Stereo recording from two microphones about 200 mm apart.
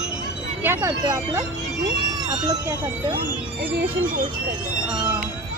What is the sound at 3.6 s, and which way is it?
Speech, 50° right (ahead or behind).